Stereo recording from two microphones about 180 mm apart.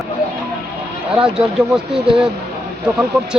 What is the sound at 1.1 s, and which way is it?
Speech, 5° right (ahead or behind).